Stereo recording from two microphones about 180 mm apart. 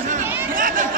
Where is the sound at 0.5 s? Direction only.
50° right (ahead or behind).